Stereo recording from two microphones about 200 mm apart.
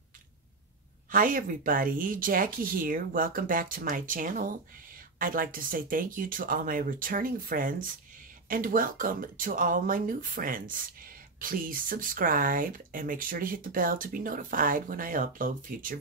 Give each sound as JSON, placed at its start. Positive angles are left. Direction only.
{"t": 1.1, "sound": "speech", "side_deg": -45}